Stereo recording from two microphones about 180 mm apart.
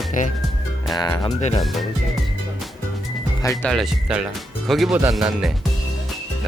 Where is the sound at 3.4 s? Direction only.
15° left (ahead or behind).